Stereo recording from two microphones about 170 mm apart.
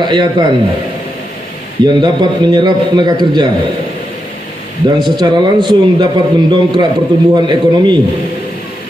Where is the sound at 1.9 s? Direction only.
25° right (ahead or behind).